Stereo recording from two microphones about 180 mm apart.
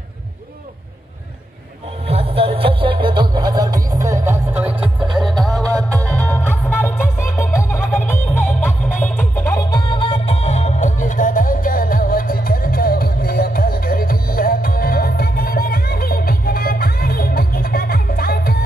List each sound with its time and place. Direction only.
2.0 s music: 30° right (ahead or behind); by 4.7 s 10° right (ahead or behind)
4.7 s music: 25° right (ahead or behind)
5.9 s music: 10° left (ahead or behind); by 18.6 s 55° left (ahead or behind)